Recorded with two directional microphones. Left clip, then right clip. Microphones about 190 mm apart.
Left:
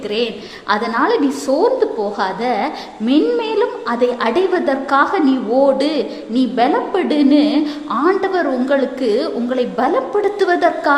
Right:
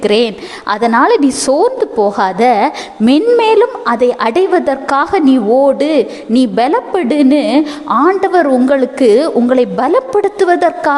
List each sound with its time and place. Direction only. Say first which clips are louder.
0.0 s a woman's voice: right 8 dB; 45° right (ahead or behind)